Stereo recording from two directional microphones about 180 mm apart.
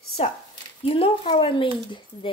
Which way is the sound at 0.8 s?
30° left (ahead or behind).